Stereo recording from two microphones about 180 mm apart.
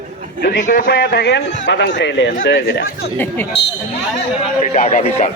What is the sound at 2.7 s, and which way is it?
Speech, 55° left (ahead or behind).